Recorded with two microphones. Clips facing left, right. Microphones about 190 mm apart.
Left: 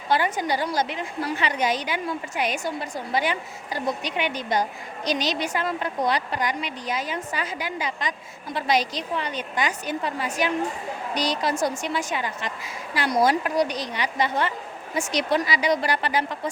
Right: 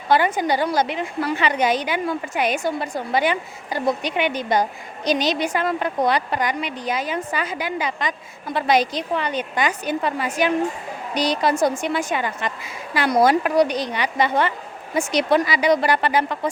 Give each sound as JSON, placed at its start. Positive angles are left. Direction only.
{"t": 0.1, "sound": "a woman's voice", "side_deg": -60}